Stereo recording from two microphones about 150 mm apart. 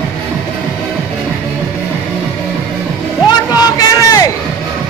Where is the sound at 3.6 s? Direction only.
25° left (ahead or behind).